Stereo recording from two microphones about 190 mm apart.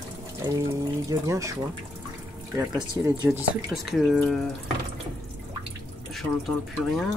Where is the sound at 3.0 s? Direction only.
15° right (ahead or behind).